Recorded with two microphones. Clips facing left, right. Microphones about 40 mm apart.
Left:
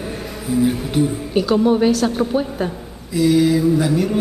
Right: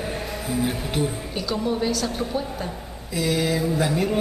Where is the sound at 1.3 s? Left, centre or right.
Left.